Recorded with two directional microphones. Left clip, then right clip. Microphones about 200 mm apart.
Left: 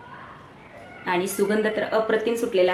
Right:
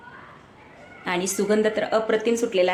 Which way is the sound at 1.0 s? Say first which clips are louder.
Left 1 dB; 40° right (ahead or behind).